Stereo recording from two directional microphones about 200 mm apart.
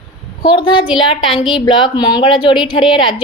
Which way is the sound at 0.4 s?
25° left (ahead or behind).